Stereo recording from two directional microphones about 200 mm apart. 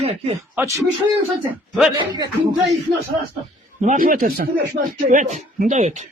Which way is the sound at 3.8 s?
40° right (ahead or behind).